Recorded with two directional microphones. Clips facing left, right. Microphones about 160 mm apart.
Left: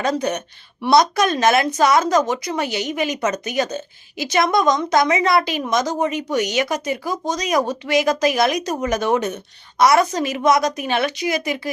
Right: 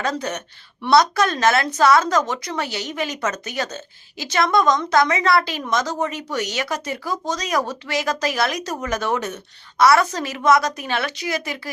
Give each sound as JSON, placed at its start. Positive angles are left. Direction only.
{"t": 0.0, "sound": "a woman's voice", "side_deg": 15}